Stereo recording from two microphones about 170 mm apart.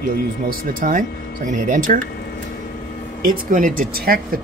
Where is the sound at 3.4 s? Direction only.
50° right (ahead or behind).